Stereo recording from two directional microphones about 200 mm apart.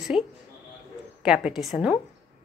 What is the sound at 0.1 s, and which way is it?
A woman's voice, 5° right (ahead or behind).